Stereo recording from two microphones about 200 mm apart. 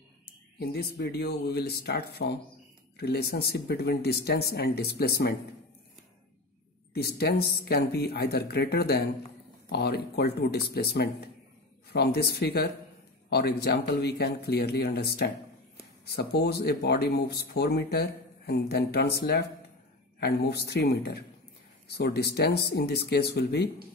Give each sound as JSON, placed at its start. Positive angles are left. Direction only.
{"t": 0.6, "sound": "speech", "side_deg": 55}
{"t": 6.9, "sound": "speech", "side_deg": 55}